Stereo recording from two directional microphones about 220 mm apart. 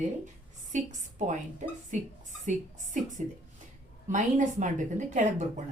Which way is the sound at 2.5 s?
35° right (ahead or behind).